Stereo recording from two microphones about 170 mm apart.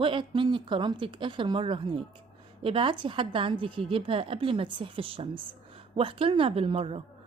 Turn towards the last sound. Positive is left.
turn(degrees=-35)  # may be behind; listen again after turning